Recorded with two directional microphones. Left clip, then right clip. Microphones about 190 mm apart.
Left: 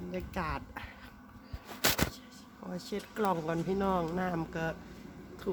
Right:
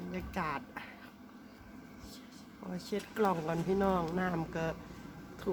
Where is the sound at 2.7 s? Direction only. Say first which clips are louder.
Even; 15° left (ahead or behind).